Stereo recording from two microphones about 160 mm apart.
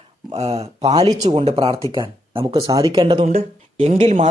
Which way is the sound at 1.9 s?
30° right (ahead or behind).